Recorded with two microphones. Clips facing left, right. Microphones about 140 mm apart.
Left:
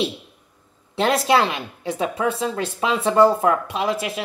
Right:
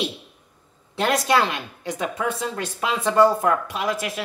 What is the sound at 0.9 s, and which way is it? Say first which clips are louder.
Speech: left 2 dB; 25° left (ahead or behind).